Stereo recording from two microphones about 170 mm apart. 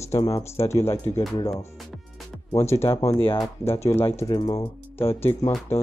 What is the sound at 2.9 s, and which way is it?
Speech, 20° left (ahead or behind).